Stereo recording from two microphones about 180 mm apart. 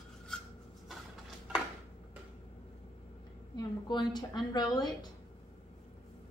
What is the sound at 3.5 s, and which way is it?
A woman's voice, 25° left (ahead or behind).